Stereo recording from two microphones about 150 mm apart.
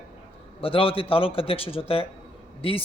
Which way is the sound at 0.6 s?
40° left (ahead or behind).